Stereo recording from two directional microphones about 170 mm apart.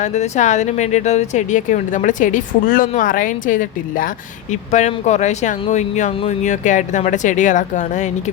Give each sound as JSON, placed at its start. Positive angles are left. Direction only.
{"t": 0.0, "sound": "speech", "side_deg": 45}
{"t": 4.7, "sound": "speech", "side_deg": 40}